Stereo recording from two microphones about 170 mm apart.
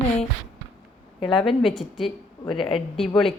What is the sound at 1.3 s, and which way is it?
Speech, centre (ahead or behind).